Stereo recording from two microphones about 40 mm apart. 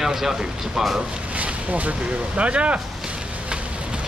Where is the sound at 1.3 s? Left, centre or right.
Right.